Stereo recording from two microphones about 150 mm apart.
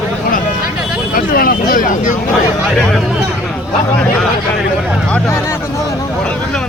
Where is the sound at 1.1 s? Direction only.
70° left (ahead or behind).